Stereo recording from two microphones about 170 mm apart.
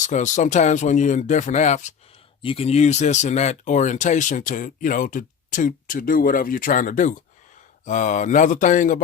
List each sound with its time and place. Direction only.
0.0 s speech: 45° left (ahead or behind)
2.4 s speech: 35° left (ahead or behind); by 9.0 s 50° left (ahead or behind)